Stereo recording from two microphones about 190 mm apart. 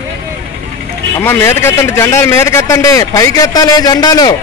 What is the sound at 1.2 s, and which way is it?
A man's voice, 10° left (ahead or behind).